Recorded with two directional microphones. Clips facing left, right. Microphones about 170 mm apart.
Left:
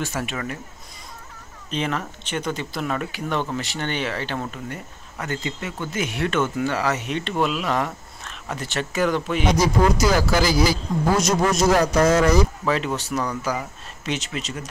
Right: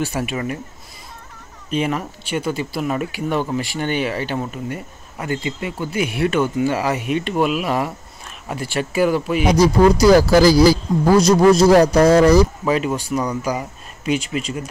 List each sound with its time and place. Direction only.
0.0 s speech: 15° right (ahead or behind)
1.7 s speech: 10° right (ahead or behind)
9.9 s speech: 35° right (ahead or behind)
12.6 s speech: 10° right (ahead or behind)